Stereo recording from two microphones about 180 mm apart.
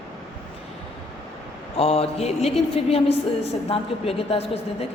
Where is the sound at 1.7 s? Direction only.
35° left (ahead or behind).